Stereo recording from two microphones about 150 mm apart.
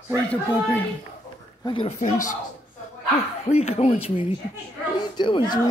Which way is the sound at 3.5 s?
45° left (ahead or behind).